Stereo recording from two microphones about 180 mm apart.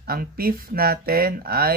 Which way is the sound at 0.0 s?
55° right (ahead or behind).